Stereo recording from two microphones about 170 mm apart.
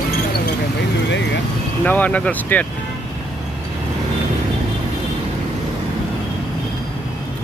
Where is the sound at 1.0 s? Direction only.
90° left.